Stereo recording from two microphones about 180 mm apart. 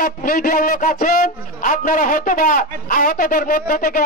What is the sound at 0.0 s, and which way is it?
A man's voice, 50° left (ahead or behind).